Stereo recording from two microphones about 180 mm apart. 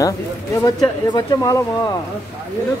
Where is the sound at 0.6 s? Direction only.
20° left (ahead or behind).